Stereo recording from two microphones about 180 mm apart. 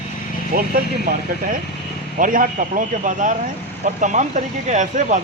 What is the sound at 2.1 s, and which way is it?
A man's voice, 50° right (ahead or behind).